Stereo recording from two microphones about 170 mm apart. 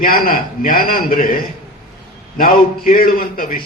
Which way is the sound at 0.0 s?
55° left (ahead or behind).